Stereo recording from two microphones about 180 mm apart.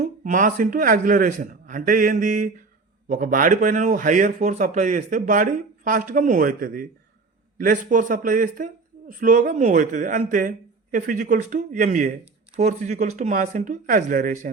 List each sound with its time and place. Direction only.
0.0 s speech: 45° right (ahead or behind)